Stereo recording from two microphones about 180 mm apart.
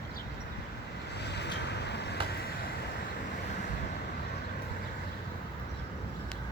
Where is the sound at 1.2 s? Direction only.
70° left (ahead or behind).